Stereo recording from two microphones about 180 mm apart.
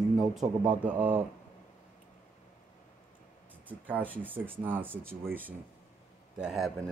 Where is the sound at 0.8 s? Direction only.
10° right (ahead or behind).